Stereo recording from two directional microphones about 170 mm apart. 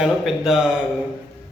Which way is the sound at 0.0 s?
Centre (ahead or behind).